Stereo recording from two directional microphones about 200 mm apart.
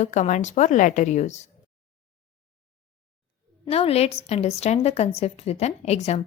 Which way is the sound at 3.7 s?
30° left (ahead or behind).